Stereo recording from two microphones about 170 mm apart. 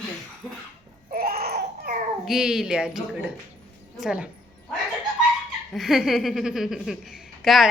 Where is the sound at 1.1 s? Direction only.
60° right (ahead or behind).